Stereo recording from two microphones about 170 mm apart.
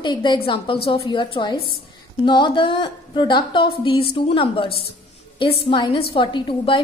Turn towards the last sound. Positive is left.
turn(degrees=30)  # may be behind; listen again after turning